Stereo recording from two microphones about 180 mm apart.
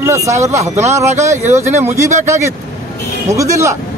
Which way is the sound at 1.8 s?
15° right (ahead or behind).